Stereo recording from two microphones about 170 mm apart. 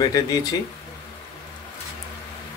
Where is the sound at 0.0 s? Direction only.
20° left (ahead or behind).